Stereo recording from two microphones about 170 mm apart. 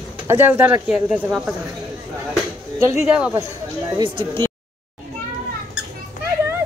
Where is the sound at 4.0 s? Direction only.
30° right (ahead or behind).